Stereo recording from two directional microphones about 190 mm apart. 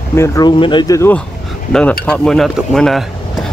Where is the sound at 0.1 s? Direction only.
15° left (ahead or behind).